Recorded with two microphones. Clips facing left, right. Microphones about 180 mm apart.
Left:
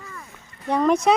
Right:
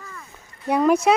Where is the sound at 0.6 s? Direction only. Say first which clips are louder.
Right 1 dB; 10° right (ahead or behind).